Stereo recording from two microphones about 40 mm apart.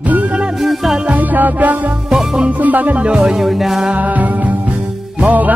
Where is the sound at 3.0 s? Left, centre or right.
Right.